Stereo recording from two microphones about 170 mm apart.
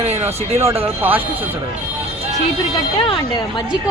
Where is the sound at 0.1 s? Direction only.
40° right (ahead or behind).